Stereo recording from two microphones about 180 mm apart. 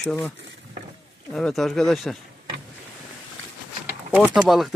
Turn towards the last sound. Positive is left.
turn(degrees=0)  # may be behind; listen again after turning